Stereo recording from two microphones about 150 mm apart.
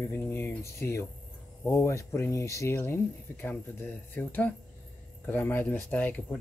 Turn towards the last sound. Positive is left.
turn(degrees=10)  # may be behind; listen again after turning